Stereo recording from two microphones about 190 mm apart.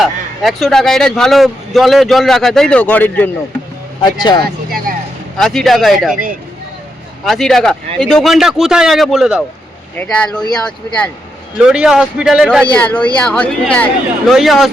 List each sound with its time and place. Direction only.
0.0 s a man's voice: centre (ahead or behind)
4.0 s speech: 20° left (ahead or behind)
5.4 s a man's voice: centre (ahead or behind)
7.3 s a man's voice: centre (ahead or behind)